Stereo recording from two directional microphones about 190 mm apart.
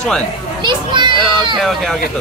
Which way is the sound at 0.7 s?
25° right (ahead or behind).